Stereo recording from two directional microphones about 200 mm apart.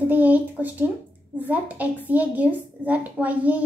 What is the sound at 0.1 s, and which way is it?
A woman's voice, 10° right (ahead or behind).